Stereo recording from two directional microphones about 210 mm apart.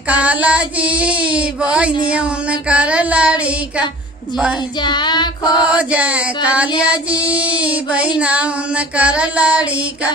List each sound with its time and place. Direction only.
0.1 s child singing: 5° right (ahead or behind)
4.8 s child singing: 20° left (ahead or behind)
5.5 s child singing: 5° right (ahead or behind)